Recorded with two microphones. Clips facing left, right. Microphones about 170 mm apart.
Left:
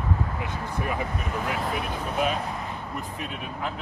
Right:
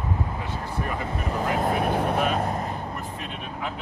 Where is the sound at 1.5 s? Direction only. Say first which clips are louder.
Right 6 dB; 55° right (ahead or behind).